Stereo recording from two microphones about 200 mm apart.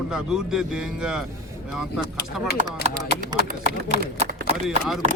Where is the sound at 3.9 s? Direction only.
35° right (ahead or behind).